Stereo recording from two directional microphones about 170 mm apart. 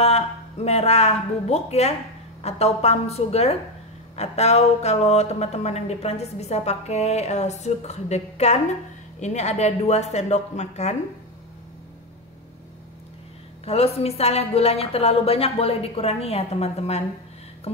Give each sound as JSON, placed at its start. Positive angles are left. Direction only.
{"t": 0.0, "sound": "speech", "side_deg": 40}
{"t": 13.7, "sound": "speech", "side_deg": 35}